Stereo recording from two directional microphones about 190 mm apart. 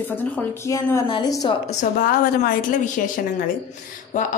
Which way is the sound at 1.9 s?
50° left (ahead or behind).